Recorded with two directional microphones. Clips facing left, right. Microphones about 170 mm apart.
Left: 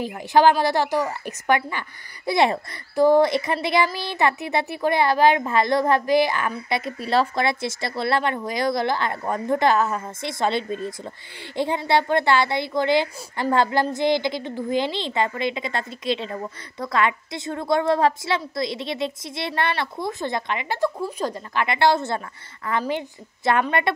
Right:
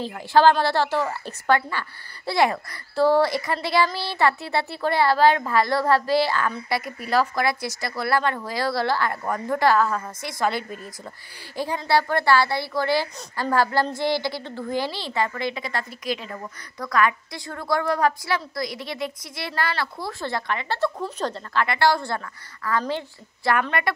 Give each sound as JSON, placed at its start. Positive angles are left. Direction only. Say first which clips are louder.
{"t": 0.0, "sound": "a woman's voice", "louder": "even", "side_deg": 15}